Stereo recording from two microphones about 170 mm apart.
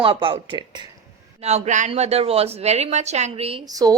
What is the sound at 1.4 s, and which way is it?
A woman's voice, 45° right (ahead or behind).